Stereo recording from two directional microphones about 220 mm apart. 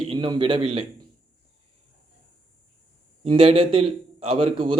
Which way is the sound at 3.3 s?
25° right (ahead or behind).